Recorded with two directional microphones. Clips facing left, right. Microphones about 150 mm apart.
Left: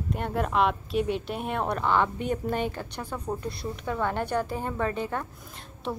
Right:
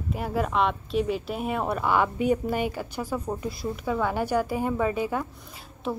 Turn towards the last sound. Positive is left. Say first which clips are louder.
# right 2 dB
turn(degrees=0)  # may be behind; listen again after turning